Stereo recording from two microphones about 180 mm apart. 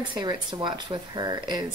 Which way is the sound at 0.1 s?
25° right (ahead or behind).